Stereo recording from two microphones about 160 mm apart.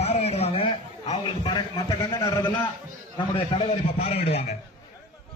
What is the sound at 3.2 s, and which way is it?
A man's voice, 35° left (ahead or behind).